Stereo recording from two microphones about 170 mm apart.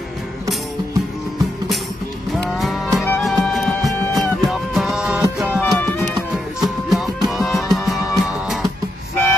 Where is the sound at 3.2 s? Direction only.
Centre (ahead or behind).